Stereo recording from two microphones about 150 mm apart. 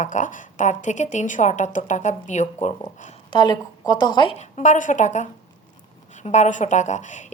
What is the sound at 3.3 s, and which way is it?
A woman's voice, 30° left (ahead or behind).